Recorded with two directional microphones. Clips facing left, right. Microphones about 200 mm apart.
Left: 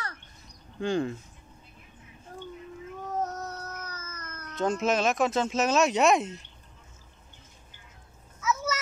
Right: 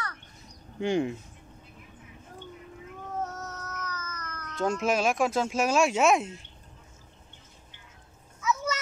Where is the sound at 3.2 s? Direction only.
35° left (ahead or behind).